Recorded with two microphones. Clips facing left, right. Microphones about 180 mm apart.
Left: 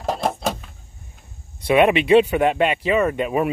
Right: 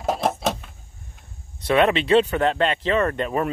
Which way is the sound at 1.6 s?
10° left (ahead or behind).